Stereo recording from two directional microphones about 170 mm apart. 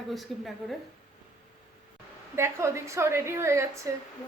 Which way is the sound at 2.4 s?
15° right (ahead or behind).